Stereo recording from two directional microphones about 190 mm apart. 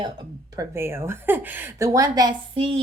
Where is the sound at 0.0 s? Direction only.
20° right (ahead or behind).